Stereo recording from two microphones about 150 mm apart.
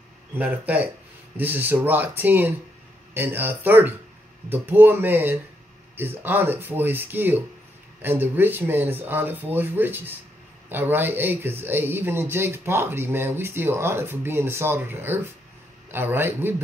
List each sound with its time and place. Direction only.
0.3 s speech: 10° right (ahead or behind)